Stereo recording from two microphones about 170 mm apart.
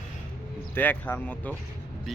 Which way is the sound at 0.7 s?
10° left (ahead or behind).